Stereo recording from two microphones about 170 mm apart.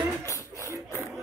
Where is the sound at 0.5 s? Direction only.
15° left (ahead or behind).